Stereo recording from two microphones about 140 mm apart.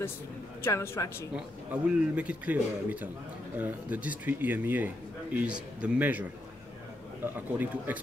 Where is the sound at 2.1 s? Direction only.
10° right (ahead or behind).